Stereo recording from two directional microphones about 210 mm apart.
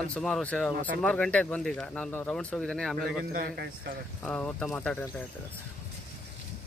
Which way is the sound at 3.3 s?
45° right (ahead or behind).